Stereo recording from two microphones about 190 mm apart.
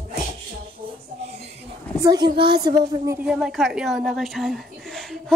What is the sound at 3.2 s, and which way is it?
A woman's voice, 5° right (ahead or behind).